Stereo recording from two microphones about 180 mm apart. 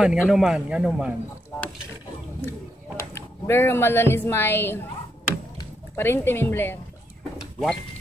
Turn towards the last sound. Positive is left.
turn(degrees=0)  # may be behind; listen again after turning